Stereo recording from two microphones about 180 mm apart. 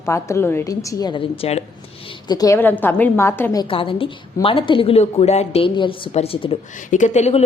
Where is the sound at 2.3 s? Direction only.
20° left (ahead or behind).